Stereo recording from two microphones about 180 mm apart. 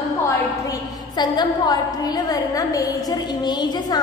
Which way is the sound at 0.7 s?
25° left (ahead or behind).